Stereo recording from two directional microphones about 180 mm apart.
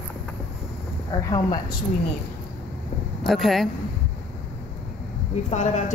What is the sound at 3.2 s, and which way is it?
Speech, centre (ahead or behind).